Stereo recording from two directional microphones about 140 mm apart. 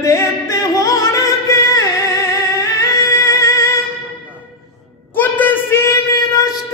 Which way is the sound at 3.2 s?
20° left (ahead or behind).